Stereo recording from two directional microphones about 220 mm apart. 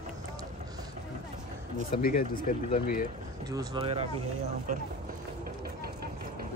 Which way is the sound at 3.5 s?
20° right (ahead or behind).